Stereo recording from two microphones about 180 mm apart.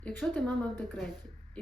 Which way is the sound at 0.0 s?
10° left (ahead or behind).